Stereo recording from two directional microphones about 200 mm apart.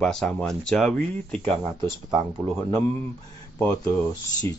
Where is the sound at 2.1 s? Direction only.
20° right (ahead or behind).